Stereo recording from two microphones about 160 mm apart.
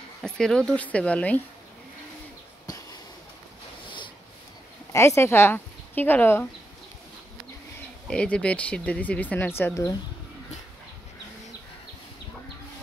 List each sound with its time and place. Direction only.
0.2 s speech: 5° left (ahead or behind)
2.6 s a sound: 20° left (ahead or behind)
4.9 s speech: 15° left (ahead or behind)
8.1 s speech: 5° left (ahead or behind)